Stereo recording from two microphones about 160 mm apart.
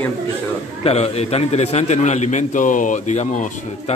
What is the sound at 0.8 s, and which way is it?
A man's voice, 40° left (ahead or behind).